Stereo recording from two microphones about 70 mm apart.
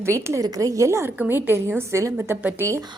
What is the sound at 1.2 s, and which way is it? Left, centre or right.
Speech, right.